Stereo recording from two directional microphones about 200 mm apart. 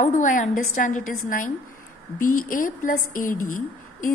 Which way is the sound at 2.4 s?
45° left (ahead or behind).